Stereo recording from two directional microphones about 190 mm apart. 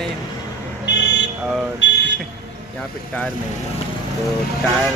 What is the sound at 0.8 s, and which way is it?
Vehicle, 65° left (ahead or behind).